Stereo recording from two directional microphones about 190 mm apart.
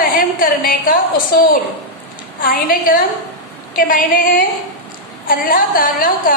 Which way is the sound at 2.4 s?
45° left (ahead or behind).